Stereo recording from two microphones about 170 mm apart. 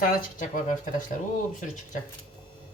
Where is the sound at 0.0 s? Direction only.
55° left (ahead or behind).